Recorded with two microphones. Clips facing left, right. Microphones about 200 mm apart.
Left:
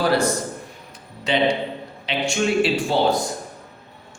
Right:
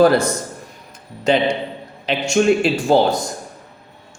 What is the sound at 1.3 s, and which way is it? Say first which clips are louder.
Speech: right 3 dB; 45° right (ahead or behind).